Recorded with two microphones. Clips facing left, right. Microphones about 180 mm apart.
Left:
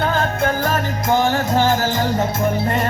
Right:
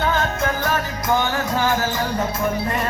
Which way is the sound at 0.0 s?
35° left (ahead or behind).